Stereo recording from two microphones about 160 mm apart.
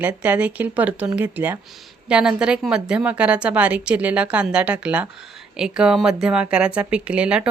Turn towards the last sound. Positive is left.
turn(degrees=-5)  # may be behind; listen again after turning